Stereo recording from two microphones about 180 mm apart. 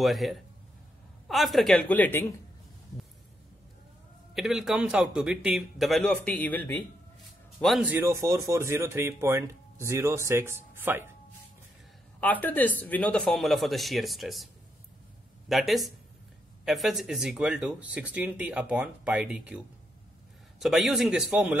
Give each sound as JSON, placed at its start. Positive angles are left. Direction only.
{"t": 0.0, "sound": "speech", "side_deg": 0}
{"t": 4.4, "sound": "speech", "side_deg": 0}
{"t": 7.6, "sound": "speech", "side_deg": -5}
{"t": 12.2, "sound": "speech", "side_deg": 10}